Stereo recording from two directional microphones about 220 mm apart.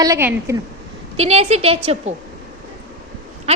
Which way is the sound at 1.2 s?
30° right (ahead or behind).